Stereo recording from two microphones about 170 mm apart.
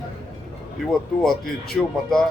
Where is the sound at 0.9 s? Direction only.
Centre (ahead or behind).